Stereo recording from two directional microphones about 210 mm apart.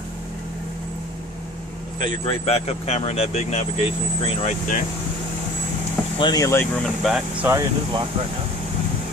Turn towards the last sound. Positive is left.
turn(degrees=-15)  # may be behind; listen again after turning